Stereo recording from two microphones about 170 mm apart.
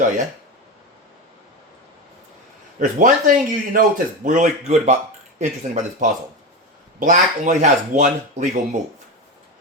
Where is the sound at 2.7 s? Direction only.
50° right (ahead or behind).